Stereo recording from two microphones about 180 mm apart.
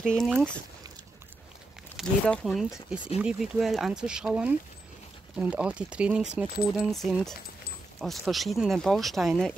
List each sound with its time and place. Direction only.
0.1 s speech: centre (ahead or behind)
2.0 s speech: 5° left (ahead or behind)
6.7 s speech: centre (ahead or behind)